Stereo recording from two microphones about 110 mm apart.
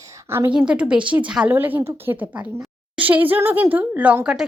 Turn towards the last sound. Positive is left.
turn(degrees=-10)  # may be behind; listen again after turning